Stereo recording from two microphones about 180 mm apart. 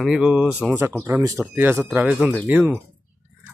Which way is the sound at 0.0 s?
5° right (ahead or behind).